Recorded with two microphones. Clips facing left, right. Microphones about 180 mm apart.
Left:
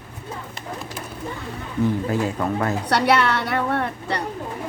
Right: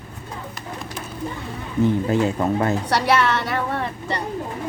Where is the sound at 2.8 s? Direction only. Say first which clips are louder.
Left 4 dB; 60° left (ahead or behind).